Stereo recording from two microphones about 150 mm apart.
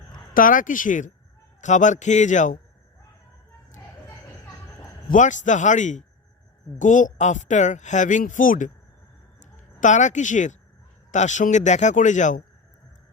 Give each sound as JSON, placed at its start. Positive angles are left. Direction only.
{"t": 0.3, "sound": "speech", "side_deg": 65}
{"t": 5.0, "sound": "speech", "side_deg": 55}